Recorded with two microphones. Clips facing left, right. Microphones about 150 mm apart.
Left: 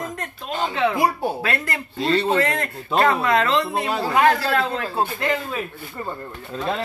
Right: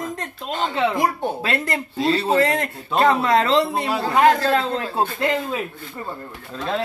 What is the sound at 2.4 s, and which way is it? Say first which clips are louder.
Speech: right 3 dB; 30° right (ahead or behind).